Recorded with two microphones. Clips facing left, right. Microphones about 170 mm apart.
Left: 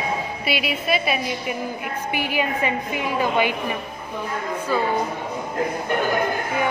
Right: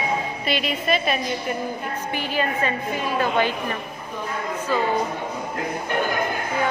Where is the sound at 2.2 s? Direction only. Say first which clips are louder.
Left 1 dB; 15° left (ahead or behind).